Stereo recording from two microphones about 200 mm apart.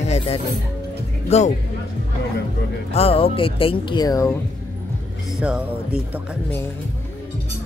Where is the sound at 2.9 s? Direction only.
30° left (ahead or behind).